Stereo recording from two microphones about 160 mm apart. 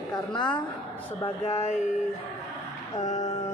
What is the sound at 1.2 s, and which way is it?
Speech, 40° left (ahead or behind).